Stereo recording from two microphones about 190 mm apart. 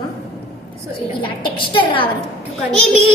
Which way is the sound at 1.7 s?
25° left (ahead or behind).